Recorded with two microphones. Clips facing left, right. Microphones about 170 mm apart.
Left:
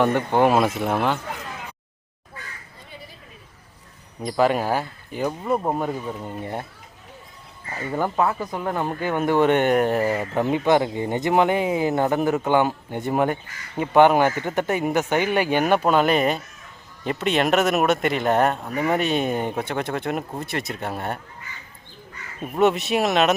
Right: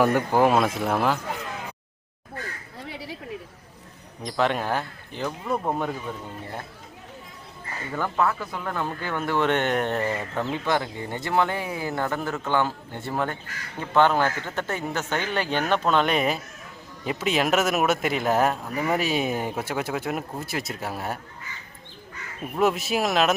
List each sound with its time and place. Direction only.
0.0 s speech: 5° right (ahead or behind)
2.7 s a sound: 80° right
4.2 s speech: 5° left (ahead or behind)
7.9 s speech: 20° left (ahead or behind); by 21.2 s 5° right (ahead or behind)
22.5 s speech: centre (ahead or behind)